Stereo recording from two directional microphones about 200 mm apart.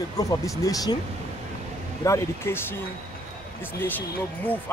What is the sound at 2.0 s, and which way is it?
Speech, 15° left (ahead or behind).